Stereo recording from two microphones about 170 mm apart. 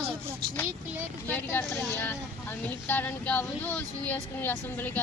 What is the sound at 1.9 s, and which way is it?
Vehicle, 10° left (ahead or behind).